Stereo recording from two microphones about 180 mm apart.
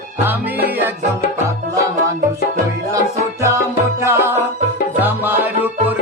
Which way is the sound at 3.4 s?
15° right (ahead or behind).